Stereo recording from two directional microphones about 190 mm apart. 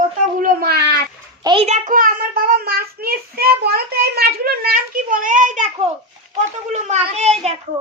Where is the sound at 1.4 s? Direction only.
30° right (ahead or behind).